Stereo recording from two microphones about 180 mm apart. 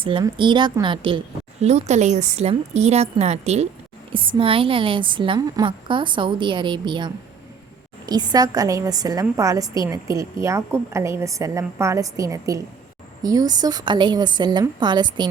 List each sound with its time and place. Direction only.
0.0 s a woman's voice: 30° right (ahead or behind)
1.6 s a woman's voice: 40° right (ahead or behind)